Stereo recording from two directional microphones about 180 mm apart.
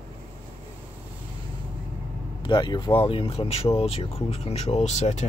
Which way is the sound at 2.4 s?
25° left (ahead or behind).